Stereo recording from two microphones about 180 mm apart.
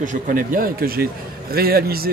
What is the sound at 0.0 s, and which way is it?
A man's voice, 45° right (ahead or behind).